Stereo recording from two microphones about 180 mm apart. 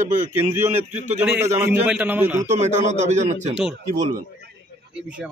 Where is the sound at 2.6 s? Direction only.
40° right (ahead or behind).